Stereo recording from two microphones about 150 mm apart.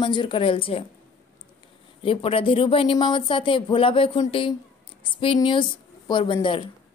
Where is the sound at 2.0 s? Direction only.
35° left (ahead or behind).